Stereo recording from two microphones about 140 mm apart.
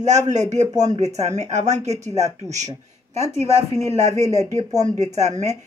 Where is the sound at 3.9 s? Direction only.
50° right (ahead or behind).